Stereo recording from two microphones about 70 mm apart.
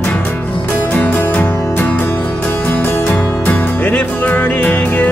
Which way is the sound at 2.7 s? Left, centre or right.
Left.